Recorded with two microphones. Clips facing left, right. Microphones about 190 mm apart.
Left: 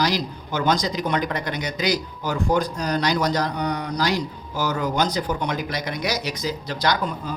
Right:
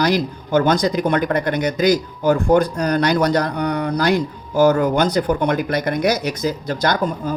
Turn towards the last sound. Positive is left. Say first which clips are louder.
# right 4 dB
turn(degrees=-50)  # may be behind; listen again after turning